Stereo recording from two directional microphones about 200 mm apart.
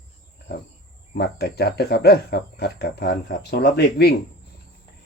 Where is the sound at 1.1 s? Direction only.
55° left (ahead or behind).